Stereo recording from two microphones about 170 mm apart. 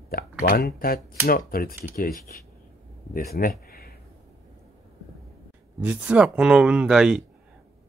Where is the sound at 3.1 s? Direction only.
55° left (ahead or behind).